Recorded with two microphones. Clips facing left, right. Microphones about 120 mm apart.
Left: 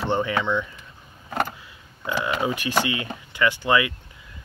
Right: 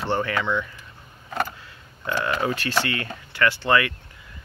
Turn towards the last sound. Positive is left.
turn(degrees=15)  # may be behind; listen again after turning